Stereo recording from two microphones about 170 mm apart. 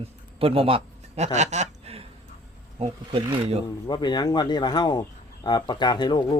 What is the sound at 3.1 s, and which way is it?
Speech, 30° right (ahead or behind).